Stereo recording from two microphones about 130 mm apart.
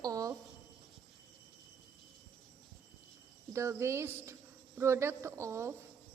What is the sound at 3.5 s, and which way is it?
Speech, 20° right (ahead or behind).